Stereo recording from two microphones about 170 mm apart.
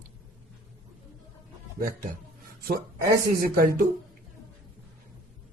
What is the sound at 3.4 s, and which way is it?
Speech, 60° right (ahead or behind).